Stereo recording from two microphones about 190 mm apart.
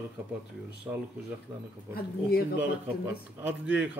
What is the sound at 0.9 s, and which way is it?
Speech, 15° right (ahead or behind).